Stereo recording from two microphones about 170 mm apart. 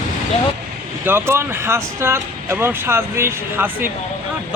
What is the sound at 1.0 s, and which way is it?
Speech, 15° right (ahead or behind).